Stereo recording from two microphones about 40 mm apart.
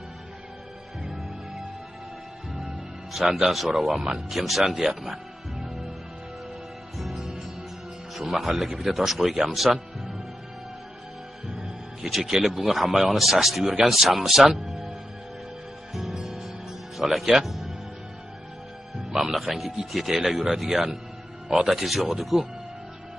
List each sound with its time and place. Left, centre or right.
3.1 s a man's voice: centre
7.0 s music: centre
8.1 s speech: centre
11.4 s music: centre
12.2 s speech: centre
12.4 s speech: centre
15.9 s music: centre
16.9 s speech: centre
18.9 s speech: centre